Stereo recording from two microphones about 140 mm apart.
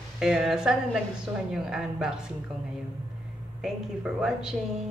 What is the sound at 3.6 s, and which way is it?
Speech, 5° right (ahead or behind).